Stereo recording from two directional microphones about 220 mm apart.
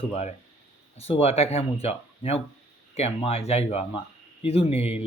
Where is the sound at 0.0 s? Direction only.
30° left (ahead or behind).